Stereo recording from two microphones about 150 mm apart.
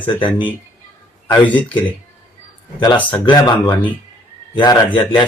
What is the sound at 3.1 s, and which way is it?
Speech, 30° left (ahead or behind).